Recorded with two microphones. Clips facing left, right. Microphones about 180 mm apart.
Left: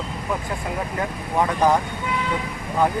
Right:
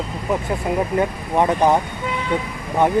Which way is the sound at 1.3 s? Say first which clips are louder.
Right 3 dB; 25° right (ahead or behind).